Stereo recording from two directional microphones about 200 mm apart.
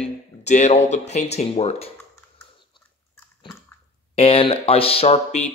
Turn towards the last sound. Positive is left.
turn(degrees=35)  # may be behind; listen again after turning